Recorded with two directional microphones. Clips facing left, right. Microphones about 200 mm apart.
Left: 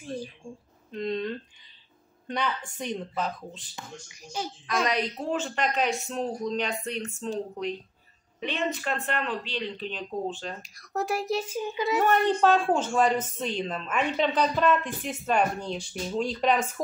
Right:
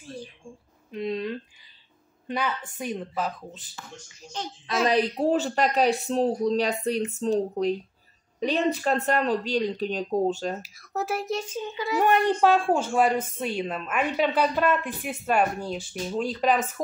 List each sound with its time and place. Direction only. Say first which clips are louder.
0.9 s a woman's voice: right 1 dB; 5° right (ahead or behind)
3.7 s speech: left 1 dB; 15° left (ahead or behind)
4.8 s speech: right 10 dB; 35° right (ahead or behind)
10.6 s a woman's voice: even; centre (ahead or behind); by 12.0 s 20° left (ahead or behind)
12.0 s a woman's voice: right 2 dB; 15° right (ahead or behind)